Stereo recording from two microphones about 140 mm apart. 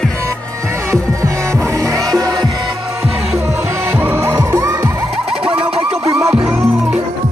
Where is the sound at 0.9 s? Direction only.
20° right (ahead or behind).